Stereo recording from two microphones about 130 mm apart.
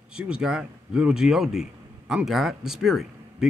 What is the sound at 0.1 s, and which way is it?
Speech, 5° right (ahead or behind).